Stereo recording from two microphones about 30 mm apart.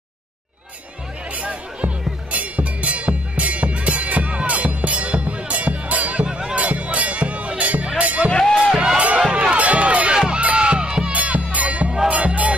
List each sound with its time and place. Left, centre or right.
1.3 s music: right
8.7 s music: right
10.1 s music: right
11.1 s music: right